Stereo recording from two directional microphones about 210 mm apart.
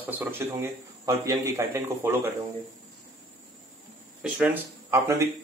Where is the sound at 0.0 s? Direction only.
10° right (ahead or behind).